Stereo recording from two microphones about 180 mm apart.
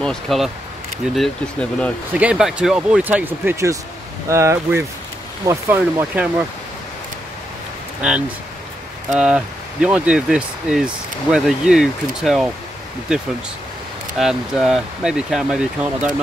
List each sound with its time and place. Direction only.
0.0 s speech: centre (ahead or behind)
2.1 s speech: 5° right (ahead or behind)
9.1 s speech: 5° right (ahead or behind)
14.1 s speech: centre (ahead or behind)